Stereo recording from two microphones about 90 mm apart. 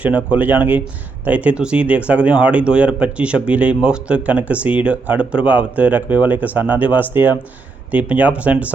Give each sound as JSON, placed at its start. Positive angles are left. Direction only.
{"t": 0.0, "sound": "speech", "side_deg": -15}